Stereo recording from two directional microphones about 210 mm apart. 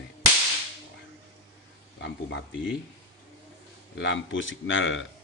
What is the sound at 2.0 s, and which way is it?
Speech, 60° left (ahead or behind).